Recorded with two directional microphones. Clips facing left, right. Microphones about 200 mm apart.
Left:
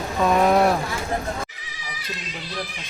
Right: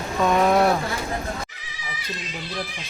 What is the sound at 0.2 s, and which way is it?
Vehicle, centre (ahead or behind).